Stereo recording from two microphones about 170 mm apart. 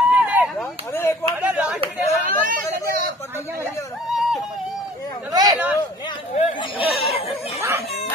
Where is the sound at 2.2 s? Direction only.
55° right (ahead or behind).